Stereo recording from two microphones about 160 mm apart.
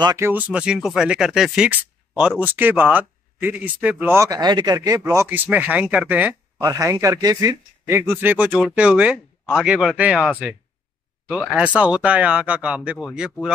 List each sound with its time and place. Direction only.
0.0 s speech: 25° right (ahead or behind)
0.3 s speech: 10° right (ahead or behind)